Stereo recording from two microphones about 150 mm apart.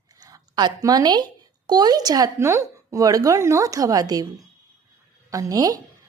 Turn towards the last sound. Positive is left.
turn(degrees=-25)  # may be behind; listen again after turning